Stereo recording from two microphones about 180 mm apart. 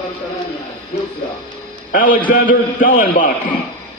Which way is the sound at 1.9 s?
50° left (ahead or behind).